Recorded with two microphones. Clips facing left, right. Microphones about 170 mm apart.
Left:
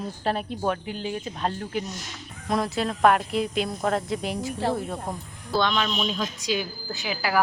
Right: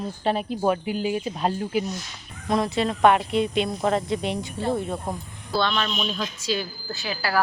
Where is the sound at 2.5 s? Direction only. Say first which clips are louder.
Right 3 dB; centre (ahead or behind).